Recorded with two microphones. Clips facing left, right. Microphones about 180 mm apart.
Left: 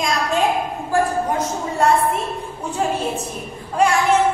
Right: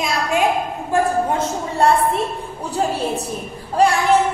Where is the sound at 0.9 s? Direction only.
30° right (ahead or behind).